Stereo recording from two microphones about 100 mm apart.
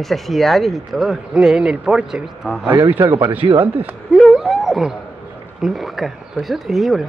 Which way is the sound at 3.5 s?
65° right (ahead or behind).